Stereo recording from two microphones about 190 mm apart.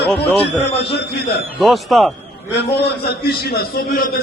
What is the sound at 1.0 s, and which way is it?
Speech, 60° left (ahead or behind).